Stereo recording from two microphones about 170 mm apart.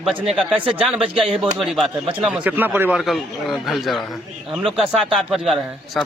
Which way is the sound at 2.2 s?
10° right (ahead or behind).